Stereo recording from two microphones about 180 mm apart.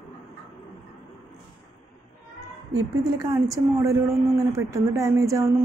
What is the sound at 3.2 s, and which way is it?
Speech, 20° right (ahead or behind).